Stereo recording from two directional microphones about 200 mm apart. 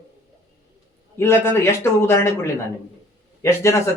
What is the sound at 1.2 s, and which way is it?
A man's voice, 10° left (ahead or behind).